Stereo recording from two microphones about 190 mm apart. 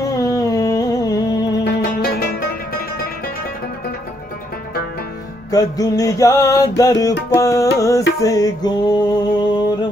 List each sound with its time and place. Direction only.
0.0 s a sound: 20° left (ahead or behind)
1.6 s music: 55° left (ahead or behind)
5.5 s music: 20° left (ahead or behind)